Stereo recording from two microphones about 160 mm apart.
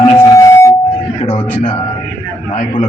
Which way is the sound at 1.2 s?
30° left (ahead or behind).